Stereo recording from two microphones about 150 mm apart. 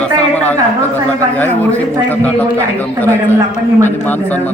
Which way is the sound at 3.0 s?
15° left (ahead or behind).